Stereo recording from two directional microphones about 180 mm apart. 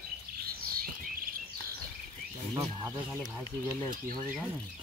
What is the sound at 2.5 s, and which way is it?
Speech, 15° right (ahead or behind).